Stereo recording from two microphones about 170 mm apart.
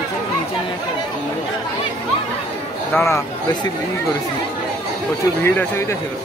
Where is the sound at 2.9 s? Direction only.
15° left (ahead or behind).